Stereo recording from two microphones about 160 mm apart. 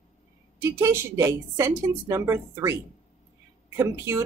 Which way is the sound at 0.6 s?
15° right (ahead or behind).